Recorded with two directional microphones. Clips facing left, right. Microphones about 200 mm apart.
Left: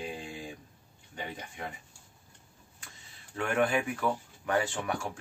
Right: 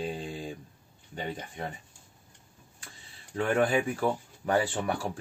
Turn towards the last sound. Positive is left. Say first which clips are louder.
# right 3 dB
turn(degrees=-35)  # may be behind; listen again after turning